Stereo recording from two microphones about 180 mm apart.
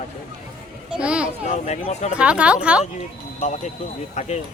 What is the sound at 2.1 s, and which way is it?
Speech, 5° right (ahead or behind).